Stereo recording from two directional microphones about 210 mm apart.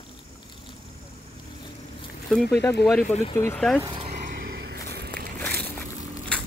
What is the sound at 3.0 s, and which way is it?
Speech, 30° left (ahead or behind).